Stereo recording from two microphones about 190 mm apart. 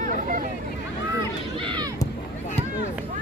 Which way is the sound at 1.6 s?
25° right (ahead or behind).